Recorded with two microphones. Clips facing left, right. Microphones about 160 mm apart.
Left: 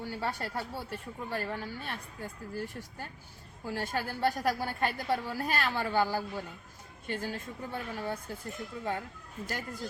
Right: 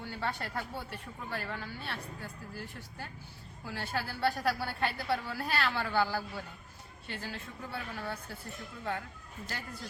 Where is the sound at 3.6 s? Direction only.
45° left (ahead or behind).